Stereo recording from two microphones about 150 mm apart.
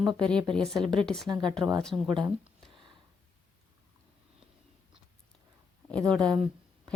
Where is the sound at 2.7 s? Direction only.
30° right (ahead or behind).